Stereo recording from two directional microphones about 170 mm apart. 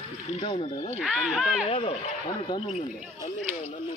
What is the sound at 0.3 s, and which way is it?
Speech, 30° left (ahead or behind).